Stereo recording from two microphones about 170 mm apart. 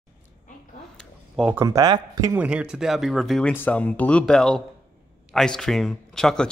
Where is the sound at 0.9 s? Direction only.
5° right (ahead or behind); by 2.3 s 20° right (ahead or behind).